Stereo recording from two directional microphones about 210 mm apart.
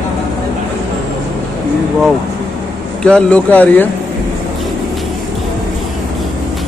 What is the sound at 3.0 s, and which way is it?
Speech, 5° left (ahead or behind).